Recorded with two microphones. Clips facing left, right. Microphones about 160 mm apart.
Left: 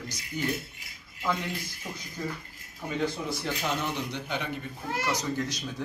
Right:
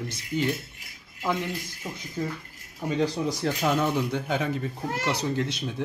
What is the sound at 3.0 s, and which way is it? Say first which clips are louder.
Speech: right 5 dB; 40° right (ahead or behind).